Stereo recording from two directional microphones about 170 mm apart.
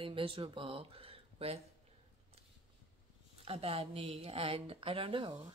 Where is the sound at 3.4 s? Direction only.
35° right (ahead or behind).